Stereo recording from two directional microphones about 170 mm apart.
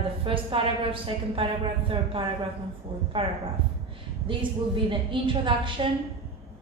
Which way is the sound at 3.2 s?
30° right (ahead or behind).